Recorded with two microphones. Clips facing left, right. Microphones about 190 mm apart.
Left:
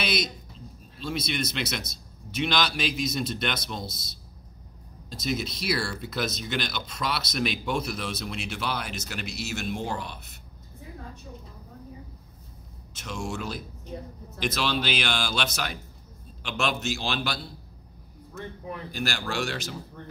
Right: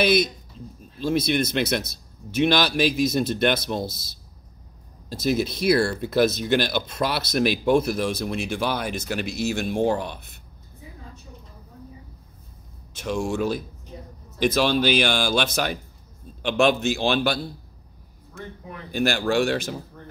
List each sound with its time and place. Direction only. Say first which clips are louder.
0.0 s a man's voice: right 9 dB; 55° right (ahead or behind)
12.9 s a man's voice: right 8 dB; 55° right (ahead or behind)
18.9 s a man's voice: right 11 dB; 55° right (ahead or behind)